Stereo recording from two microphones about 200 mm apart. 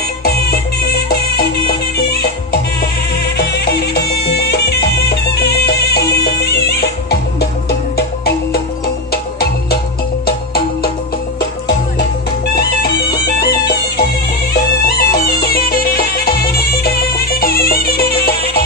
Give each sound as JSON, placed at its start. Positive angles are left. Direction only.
{"t": 3.3, "sound": "music", "side_deg": 55}
{"t": 8.8, "sound": "music", "side_deg": 50}
{"t": 13.4, "sound": "music", "side_deg": 55}